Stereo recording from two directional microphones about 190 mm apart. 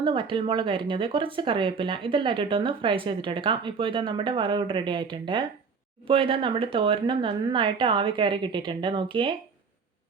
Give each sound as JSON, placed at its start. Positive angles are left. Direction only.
{"t": 0.0, "sound": "speech", "side_deg": -25}